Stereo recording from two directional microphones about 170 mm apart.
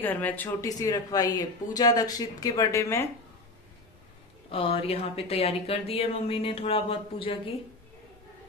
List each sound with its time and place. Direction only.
0.0 s speech: 10° left (ahead or behind)
0.7 s speech: 20° left (ahead or behind)
4.5 s speech: 35° left (ahead or behind)